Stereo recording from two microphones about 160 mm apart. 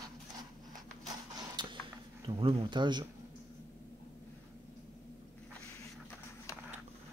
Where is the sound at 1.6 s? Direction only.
30° right (ahead or behind).